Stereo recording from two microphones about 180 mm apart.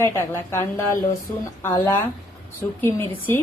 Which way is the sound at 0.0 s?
15° left (ahead or behind).